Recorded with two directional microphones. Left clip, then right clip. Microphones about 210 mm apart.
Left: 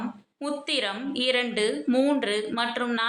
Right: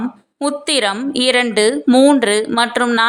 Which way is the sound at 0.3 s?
50° right (ahead or behind).